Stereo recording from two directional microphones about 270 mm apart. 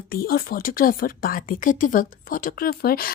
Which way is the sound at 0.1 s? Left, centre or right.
Left.